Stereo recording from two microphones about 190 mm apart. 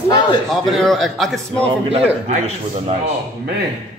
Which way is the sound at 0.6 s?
Centre (ahead or behind).